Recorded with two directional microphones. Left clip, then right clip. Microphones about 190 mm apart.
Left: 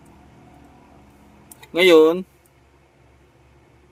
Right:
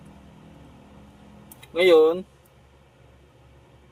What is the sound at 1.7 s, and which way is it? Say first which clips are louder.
Speech: left 4 dB; 55° left (ahead or behind).